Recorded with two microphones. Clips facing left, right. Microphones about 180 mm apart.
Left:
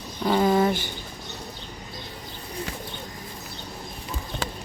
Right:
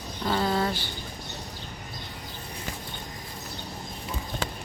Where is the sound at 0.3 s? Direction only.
15° left (ahead or behind).